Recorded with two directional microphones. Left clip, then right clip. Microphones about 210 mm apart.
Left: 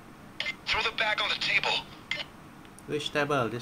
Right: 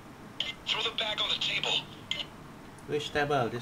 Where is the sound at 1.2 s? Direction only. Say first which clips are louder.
Left 3 dB; 30° left (ahead or behind).